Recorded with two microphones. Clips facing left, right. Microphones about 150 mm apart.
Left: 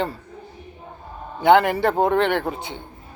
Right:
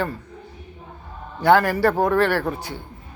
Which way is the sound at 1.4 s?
20° left (ahead or behind).